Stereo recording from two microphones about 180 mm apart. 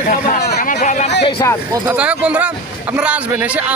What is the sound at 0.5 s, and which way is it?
Speech, 65° left (ahead or behind).